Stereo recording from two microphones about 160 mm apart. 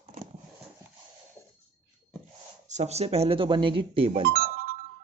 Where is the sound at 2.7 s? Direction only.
45° right (ahead or behind).